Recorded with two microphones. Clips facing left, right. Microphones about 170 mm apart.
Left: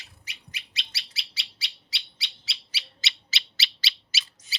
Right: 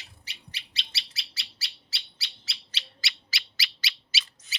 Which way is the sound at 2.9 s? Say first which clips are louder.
Left 2 dB; 25° left (ahead or behind).